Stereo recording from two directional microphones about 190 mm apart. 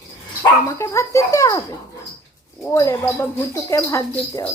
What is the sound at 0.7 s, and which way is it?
Speech, 15° left (ahead or behind).